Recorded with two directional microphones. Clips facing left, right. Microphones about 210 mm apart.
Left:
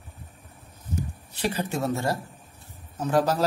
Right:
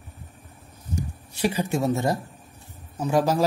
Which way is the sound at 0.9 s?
10° right (ahead or behind).